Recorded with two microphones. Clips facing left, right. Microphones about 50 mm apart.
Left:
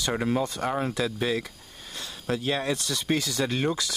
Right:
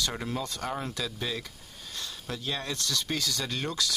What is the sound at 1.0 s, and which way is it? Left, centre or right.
Speech, left.